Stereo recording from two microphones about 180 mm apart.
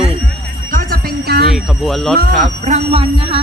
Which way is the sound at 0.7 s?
50° right (ahead or behind).